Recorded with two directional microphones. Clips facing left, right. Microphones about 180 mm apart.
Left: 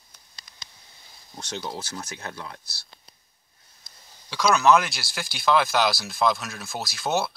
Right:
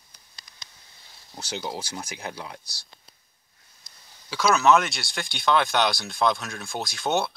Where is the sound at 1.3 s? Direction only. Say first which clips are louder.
Right 1 dB; 5° right (ahead or behind).